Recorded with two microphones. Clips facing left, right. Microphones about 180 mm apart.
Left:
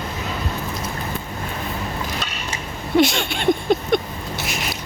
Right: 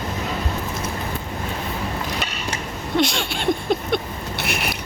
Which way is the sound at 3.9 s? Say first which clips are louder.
Left 5 dB; centre (ahead or behind).